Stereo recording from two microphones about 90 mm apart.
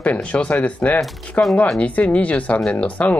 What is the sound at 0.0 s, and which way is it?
Speech, 15° left (ahead or behind).